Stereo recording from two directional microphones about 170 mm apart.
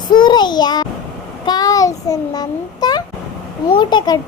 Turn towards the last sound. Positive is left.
turn(degrees=25)  # may be behind; listen again after turning